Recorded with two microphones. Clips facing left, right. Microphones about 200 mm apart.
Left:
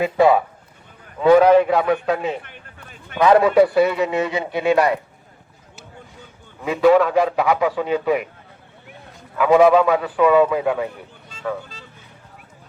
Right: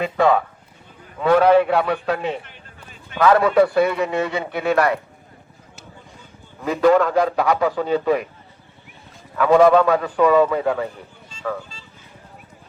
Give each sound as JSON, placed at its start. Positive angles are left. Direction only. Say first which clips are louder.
{"t": 0.0, "sound": "a man's voice", "louder": "left 2 dB", "side_deg": 15}
{"t": 3.2, "sound": "speech", "louder": "left 2 dB", "side_deg": 20}
{"t": 3.4, "sound": "a man's voice", "louder": "left 1 dB", "side_deg": 5}
{"t": 4.3, "sound": "speech", "louder": "left 2 dB", "side_deg": 20}
{"t": 6.7, "sound": "a man's voice", "louder": "left 1 dB", "side_deg": 5}
{"t": 9.4, "sound": "a man's voice", "louder": "even", "side_deg": 10}